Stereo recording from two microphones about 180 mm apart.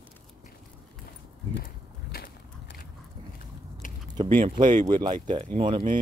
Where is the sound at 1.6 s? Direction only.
50° left (ahead or behind).